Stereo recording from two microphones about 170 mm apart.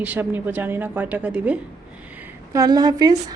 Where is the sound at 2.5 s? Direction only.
20° right (ahead or behind).